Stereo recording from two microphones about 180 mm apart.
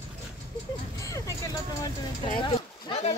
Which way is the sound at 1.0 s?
20° left (ahead or behind).